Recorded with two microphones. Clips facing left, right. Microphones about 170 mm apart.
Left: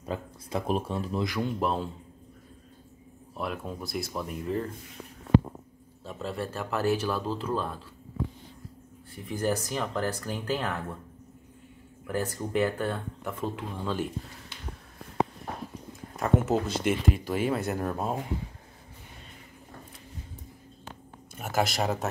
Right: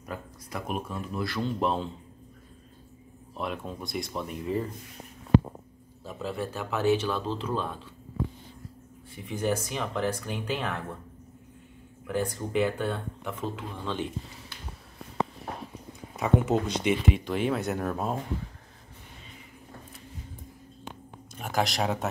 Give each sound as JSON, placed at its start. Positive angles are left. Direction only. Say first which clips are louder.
{"t": 0.0, "sound": "speech", "louder": "left 4 dB", "side_deg": 25}
{"t": 1.2, "sound": "a man's voice", "louder": "right 2 dB", "side_deg": 15}
{"t": 1.6, "sound": "speech", "louder": "right 2 dB", "side_deg": 0}
{"t": 3.3, "sound": "speech", "louder": "even", "side_deg": 5}
{"t": 6.0, "sound": "speech", "louder": "right 1 dB", "side_deg": 0}
{"t": 9.1, "sound": "speech", "louder": "even", "side_deg": 0}
{"t": 12.1, "sound": "speech", "louder": "right 1 dB", "side_deg": 5}
{"t": 16.2, "sound": "speech", "louder": "right 1 dB", "side_deg": 0}
{"t": 21.4, "sound": "speech", "louder": "even", "side_deg": 5}